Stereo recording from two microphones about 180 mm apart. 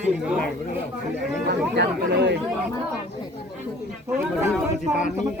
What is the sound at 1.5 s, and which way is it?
Speech, 65° right (ahead or behind).